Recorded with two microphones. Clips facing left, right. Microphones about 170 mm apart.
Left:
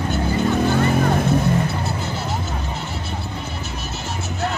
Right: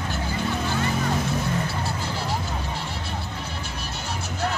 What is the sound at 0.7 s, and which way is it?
Music, 55° left (ahead or behind).